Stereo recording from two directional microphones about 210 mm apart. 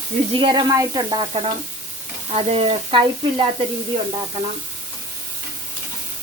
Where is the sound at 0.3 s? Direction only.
20° right (ahead or behind).